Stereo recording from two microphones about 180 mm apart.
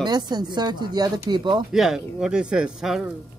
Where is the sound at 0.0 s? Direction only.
20° right (ahead or behind).